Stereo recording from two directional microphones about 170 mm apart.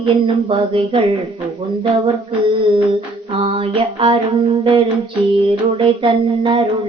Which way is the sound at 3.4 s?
30° right (ahead or behind).